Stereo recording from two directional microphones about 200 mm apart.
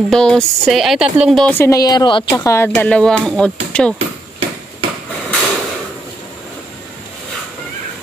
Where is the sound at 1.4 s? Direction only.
10° left (ahead or behind).